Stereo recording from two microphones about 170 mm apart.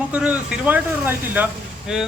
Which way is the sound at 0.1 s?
5° right (ahead or behind).